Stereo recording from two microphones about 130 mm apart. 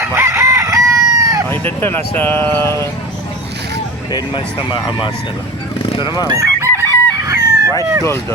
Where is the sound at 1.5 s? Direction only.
15° left (ahead or behind).